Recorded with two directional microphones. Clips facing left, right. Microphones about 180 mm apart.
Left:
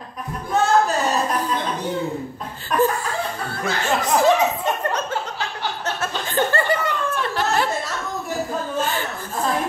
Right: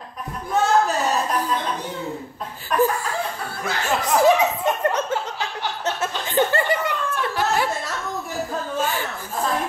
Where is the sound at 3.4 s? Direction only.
5° right (ahead or behind).